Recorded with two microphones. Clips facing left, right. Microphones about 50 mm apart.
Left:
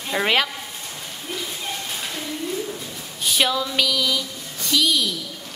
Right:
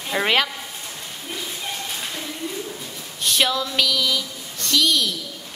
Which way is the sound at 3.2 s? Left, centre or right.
Centre.